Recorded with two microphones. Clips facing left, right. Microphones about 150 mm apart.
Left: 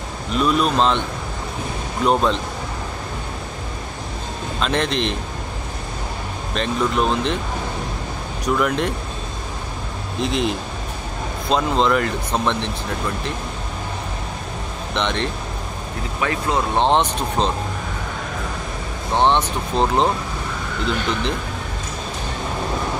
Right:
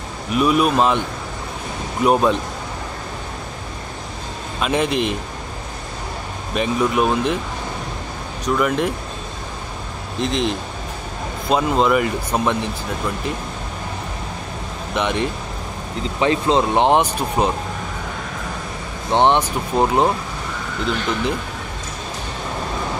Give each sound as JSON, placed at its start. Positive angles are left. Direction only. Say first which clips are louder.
{"t": 0.3, "sound": "speech", "louder": "right 2 dB", "side_deg": -10}
{"t": 2.0, "sound": "speech", "louder": "right 2 dB", "side_deg": -10}
{"t": 4.6, "sound": "speech", "louder": "right 2 dB", "side_deg": -10}
{"t": 6.5, "sound": "speech", "louder": "right 2 dB", "side_deg": -10}
{"t": 8.5, "sound": "speech", "louder": "right 1 dB", "side_deg": 0}
{"t": 10.2, "sound": "speech", "louder": "right 1 dB", "side_deg": 0}
{"t": 15.0, "sound": "speech", "louder": "right 2 dB", "side_deg": -10}
{"t": 16.2, "sound": "speech", "louder": "right 5 dB", "side_deg": -25}
{"t": 19.1, "sound": "speech", "louder": "right 2 dB", "side_deg": -15}